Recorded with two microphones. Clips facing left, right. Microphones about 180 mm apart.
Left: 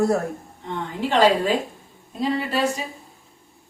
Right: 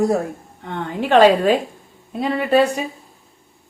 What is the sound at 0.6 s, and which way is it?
A woman's voice, 60° right (ahead or behind).